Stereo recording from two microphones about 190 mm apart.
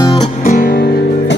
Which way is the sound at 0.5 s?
50° left (ahead or behind).